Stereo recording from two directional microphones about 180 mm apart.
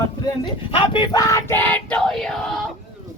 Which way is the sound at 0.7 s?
25° left (ahead or behind).